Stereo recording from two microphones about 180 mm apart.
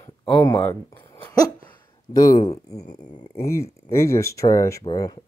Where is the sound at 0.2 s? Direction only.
25° left (ahead or behind).